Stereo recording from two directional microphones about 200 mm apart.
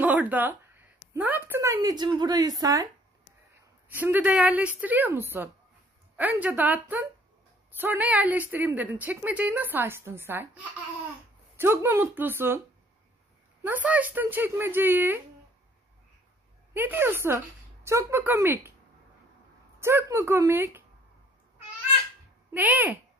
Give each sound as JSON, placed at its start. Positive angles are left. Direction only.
{"t": 0.0, "sound": "a sound", "side_deg": -10}
{"t": 1.1, "sound": "a woman's voice", "side_deg": -10}
{"t": 3.9, "sound": "speech", "side_deg": -10}
{"t": 16.7, "sound": "speech", "side_deg": -10}
{"t": 19.8, "sound": "speech", "side_deg": -15}
{"t": 22.5, "sound": "speech", "side_deg": -10}